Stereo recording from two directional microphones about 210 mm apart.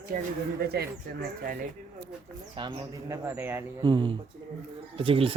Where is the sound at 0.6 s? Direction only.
50° right (ahead or behind).